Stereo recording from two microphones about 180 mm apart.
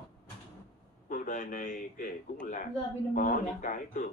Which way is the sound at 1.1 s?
45° left (ahead or behind).